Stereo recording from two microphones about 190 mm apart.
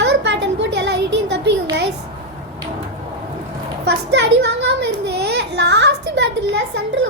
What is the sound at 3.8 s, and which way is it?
A woman's voice, 65° right (ahead or behind).